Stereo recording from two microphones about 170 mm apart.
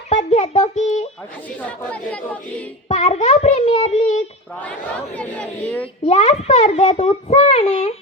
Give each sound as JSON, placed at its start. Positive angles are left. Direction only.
{"t": 0.1, "sound": "a child's voice", "side_deg": 40}
{"t": 1.9, "sound": "speech", "side_deg": 10}
{"t": 2.9, "sound": "a child's voice", "side_deg": 40}
{"t": 4.6, "sound": "speech", "side_deg": 10}
{"t": 5.8, "sound": "a child's voice", "side_deg": 40}